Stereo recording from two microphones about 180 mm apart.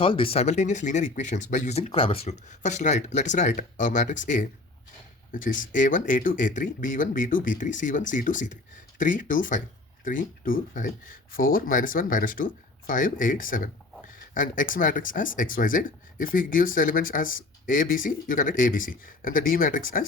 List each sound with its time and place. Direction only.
0.0 s speech: 30° left (ahead or behind); by 20.1 s 50° left (ahead or behind)